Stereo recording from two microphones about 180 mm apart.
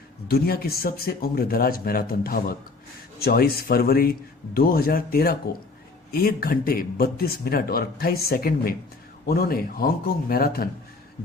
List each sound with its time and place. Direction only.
0.3 s speech: 60° left (ahead or behind)